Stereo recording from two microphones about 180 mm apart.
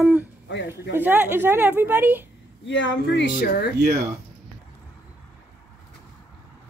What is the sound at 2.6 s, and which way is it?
Speech, 90° left.